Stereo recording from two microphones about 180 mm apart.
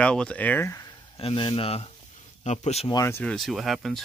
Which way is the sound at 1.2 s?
30° left (ahead or behind).